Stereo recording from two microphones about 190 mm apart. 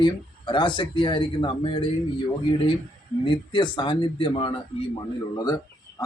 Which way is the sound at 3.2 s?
25° left (ahead or behind).